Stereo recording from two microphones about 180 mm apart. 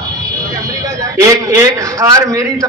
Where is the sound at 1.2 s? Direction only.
15° right (ahead or behind).